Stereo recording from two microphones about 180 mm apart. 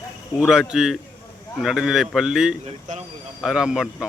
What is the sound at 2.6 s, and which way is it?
Speech, 40° right (ahead or behind).